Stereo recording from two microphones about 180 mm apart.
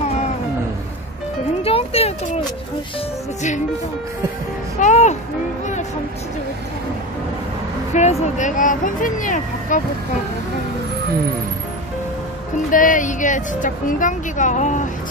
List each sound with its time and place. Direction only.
1.6 s music: 30° left (ahead or behind)
4.7 s music: 40° left (ahead or behind)
7.9 s speech: 40° left (ahead or behind)
12.7 s a woman's voice: 45° left (ahead or behind)